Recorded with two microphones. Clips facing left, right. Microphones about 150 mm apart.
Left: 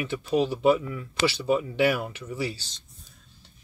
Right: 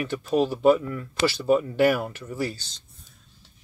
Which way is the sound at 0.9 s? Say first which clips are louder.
Right 1 dB; 50° right (ahead or behind).